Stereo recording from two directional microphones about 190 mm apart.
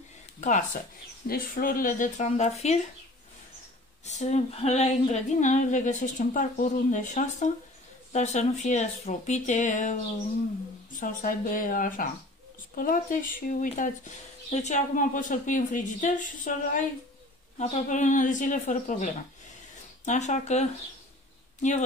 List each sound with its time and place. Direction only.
0.4 s speech: 40° left (ahead or behind)
1.2 s speech: 50° left (ahead or behind)
4.0 s speech: 35° left (ahead or behind)
11.0 s speech: 45° left (ahead or behind)